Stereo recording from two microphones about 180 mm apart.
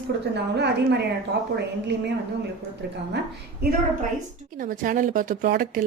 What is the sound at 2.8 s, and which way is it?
Speech, 65° right (ahead or behind).